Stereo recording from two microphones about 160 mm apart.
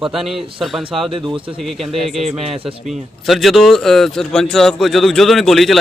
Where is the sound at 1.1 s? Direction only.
30° right (ahead or behind).